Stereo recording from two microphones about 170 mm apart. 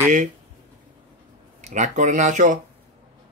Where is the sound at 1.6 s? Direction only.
45° right (ahead or behind).